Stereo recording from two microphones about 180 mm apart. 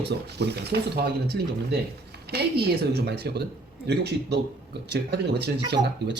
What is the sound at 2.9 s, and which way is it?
Speech, 65° right (ahead or behind).